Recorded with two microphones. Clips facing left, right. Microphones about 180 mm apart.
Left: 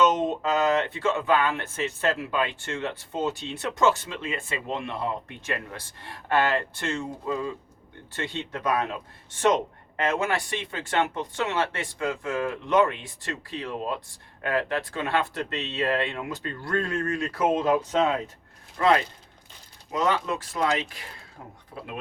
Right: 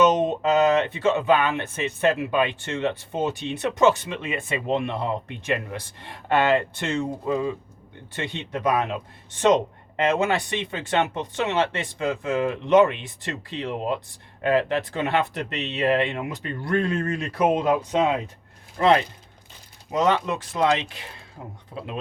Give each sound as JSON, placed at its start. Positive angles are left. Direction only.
{"t": 0.0, "sound": "speech", "side_deg": -20}